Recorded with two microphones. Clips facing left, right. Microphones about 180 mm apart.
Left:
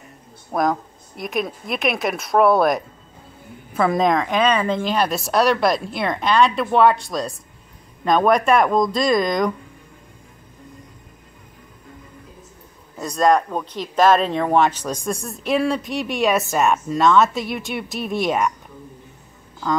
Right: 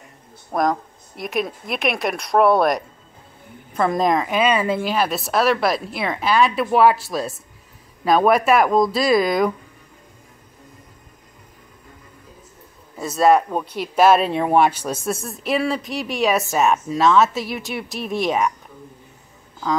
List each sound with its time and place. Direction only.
0.5 s speech: centre (ahead or behind)
12.9 s speech: 5° right (ahead or behind)